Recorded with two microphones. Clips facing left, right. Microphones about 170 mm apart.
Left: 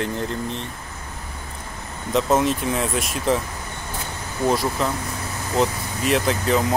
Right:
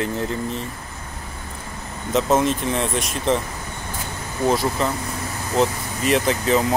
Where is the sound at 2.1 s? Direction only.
Centre (ahead or behind).